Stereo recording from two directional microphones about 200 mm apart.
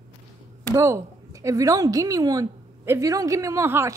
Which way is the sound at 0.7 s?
15° right (ahead or behind).